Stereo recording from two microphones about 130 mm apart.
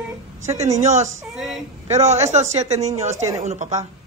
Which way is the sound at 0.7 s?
60° right (ahead or behind).